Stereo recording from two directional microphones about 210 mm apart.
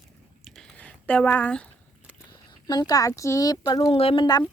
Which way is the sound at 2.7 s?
20° left (ahead or behind).